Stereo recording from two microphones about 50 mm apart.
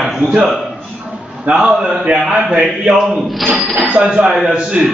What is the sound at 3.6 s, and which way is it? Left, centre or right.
Speech, centre.